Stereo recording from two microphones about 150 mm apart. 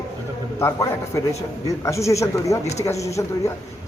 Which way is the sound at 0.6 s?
20° left (ahead or behind).